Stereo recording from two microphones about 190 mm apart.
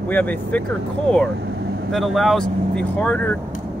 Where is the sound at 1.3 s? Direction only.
60° right (ahead or behind).